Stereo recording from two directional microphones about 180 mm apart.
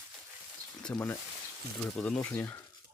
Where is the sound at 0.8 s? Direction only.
10° left (ahead or behind).